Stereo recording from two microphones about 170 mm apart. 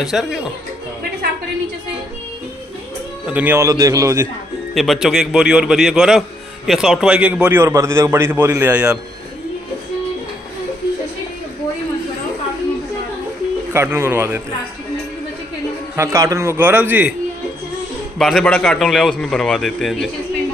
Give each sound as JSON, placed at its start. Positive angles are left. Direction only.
{"t": 0.0, "sound": "a man's voice", "side_deg": 0}
{"t": 3.3, "sound": "a man's voice", "side_deg": -10}
{"t": 4.7, "sound": "a man's voice", "side_deg": 0}
{"t": 13.7, "sound": "a man's voice", "side_deg": -15}
{"t": 16.0, "sound": "a man's voice", "side_deg": -20}
{"t": 18.2, "sound": "a man's voice", "side_deg": 5}